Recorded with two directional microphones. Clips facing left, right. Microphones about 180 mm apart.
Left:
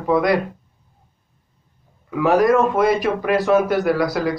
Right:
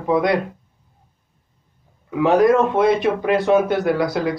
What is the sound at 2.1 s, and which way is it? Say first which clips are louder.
Speech: right 1 dB; 25° right (ahead or behind).